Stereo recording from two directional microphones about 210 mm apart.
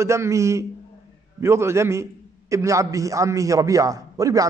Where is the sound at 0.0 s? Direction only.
15° right (ahead or behind).